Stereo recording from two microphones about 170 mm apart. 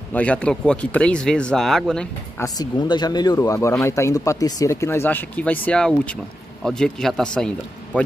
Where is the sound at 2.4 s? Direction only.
25° left (ahead or behind).